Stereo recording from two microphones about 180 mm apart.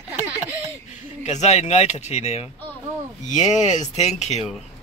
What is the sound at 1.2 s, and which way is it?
Speech, 40° left (ahead or behind).